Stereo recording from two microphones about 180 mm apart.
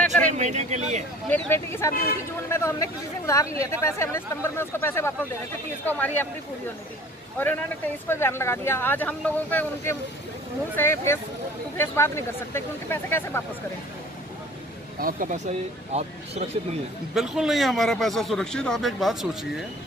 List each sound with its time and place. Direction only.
0.0 s a sound: 5° left (ahead or behind)
0.3 s speech: 40° right (ahead or behind)
1.3 s speech: 15° left (ahead or behind)
7.3 s speech: 10° left (ahead or behind)
15.0 s speech: 50° right (ahead or behind)
17.1 s a man's voice: 5° right (ahead or behind)